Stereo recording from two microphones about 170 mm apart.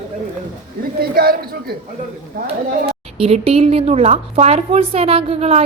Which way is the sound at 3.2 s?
35° right (ahead or behind).